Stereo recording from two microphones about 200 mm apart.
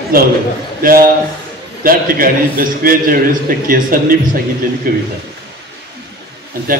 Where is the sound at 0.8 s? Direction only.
45° right (ahead or behind).